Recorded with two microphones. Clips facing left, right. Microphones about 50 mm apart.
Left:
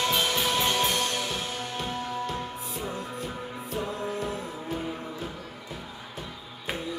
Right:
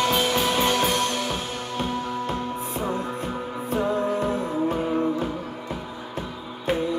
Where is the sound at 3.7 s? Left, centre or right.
Right.